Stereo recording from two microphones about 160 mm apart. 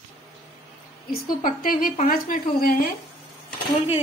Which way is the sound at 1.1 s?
65° left (ahead or behind).